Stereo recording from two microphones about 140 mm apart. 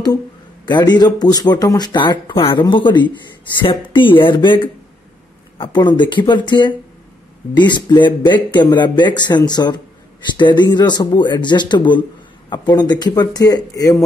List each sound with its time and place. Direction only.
0.7 s speech: 30° left (ahead or behind)
5.6 s speech: 35° left (ahead or behind)